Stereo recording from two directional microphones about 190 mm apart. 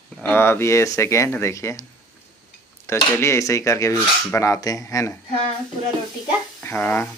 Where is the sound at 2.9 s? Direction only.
15° left (ahead or behind).